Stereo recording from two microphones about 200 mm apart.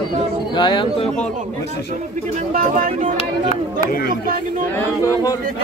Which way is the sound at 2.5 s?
45° right (ahead or behind).